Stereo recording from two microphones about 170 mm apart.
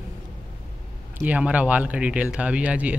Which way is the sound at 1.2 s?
10° right (ahead or behind).